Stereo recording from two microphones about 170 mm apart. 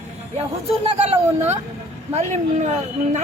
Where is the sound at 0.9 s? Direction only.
40° right (ahead or behind).